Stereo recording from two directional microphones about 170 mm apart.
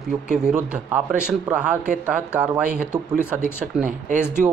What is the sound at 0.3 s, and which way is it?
Speech, 5° right (ahead or behind).